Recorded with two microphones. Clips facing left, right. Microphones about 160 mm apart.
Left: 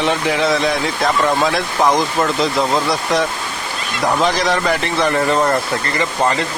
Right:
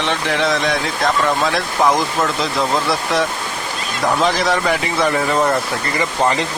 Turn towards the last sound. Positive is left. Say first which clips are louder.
# even
turn(degrees=-15)  # may be behind; listen again after turning